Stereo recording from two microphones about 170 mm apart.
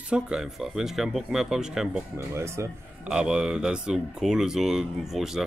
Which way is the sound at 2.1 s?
15° right (ahead or behind).